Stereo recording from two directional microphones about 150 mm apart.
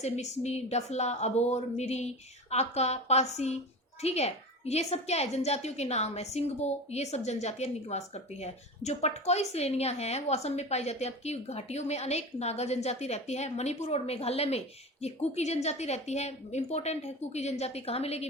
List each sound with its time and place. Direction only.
0.0 s a woman's voice: 45° left (ahead or behind)